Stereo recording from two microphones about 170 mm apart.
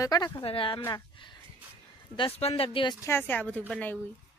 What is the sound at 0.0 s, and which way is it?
Speech, 20° left (ahead or behind).